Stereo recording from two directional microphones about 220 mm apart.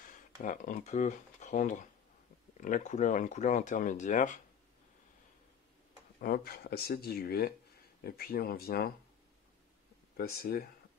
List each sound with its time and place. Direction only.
0.0 s speech: 40° left (ahead or behind)
6.1 s speech: 45° left (ahead or behind)
10.1 s speech: 45° left (ahead or behind)